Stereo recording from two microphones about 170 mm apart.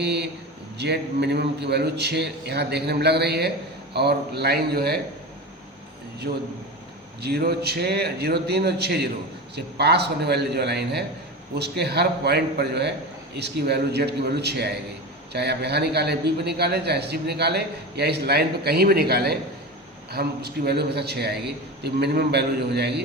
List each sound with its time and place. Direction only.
0.0 s a man's voice: 80° right
6.3 s a man's voice: 65° right (ahead or behind)